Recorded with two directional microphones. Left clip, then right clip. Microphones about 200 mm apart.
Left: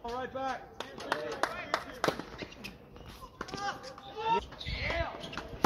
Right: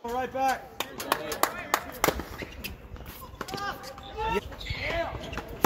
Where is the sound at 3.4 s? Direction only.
20° left (ahead or behind).